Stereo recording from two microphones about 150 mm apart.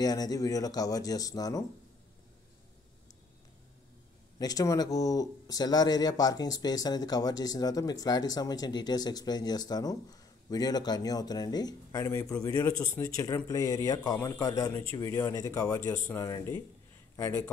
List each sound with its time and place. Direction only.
0.0 s speech: 25° left (ahead or behind)
4.4 s speech: 25° left (ahead or behind)